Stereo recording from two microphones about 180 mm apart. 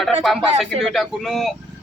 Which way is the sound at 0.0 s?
Centre (ahead or behind).